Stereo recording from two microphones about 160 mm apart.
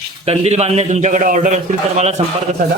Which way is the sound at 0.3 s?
40° right (ahead or behind).